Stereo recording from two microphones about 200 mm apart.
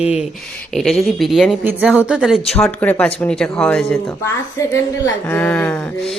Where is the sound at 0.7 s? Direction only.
Centre (ahead or behind).